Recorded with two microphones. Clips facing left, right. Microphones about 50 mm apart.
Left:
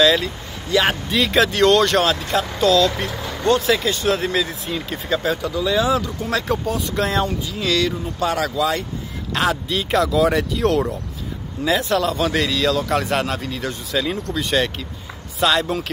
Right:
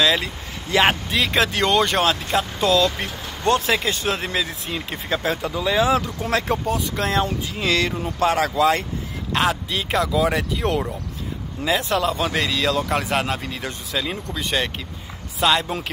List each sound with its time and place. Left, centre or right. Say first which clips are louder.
0.0 s vehicle: left 4 dB; centre
0.7 s speech: even; right
1.1 s speech: left 3 dB; centre
3.4 s speech: left 2 dB; right
4.1 s speech: left 4 dB; centre
4.8 s speech: left 2 dB; right
7.0 s speech: left 2 dB; centre
7.4 s speech: left 1 dB; right
9.7 s speech: left 3 dB; centre
12.5 s speech: left 2 dB; right
14.3 s speech: left 3 dB; centre